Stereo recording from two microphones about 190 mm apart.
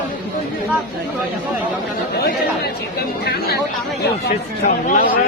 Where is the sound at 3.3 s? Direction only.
55° left (ahead or behind).